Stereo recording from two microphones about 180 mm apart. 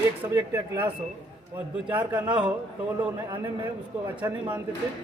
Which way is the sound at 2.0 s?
25° right (ahead or behind).